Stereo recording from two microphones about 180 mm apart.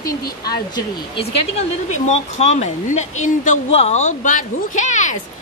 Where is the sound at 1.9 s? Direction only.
40° left (ahead or behind).